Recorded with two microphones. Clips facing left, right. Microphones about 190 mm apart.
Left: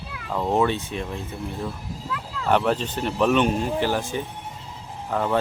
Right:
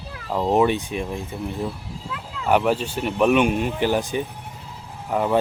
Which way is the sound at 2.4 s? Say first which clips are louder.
Right 2 dB; 10° right (ahead or behind).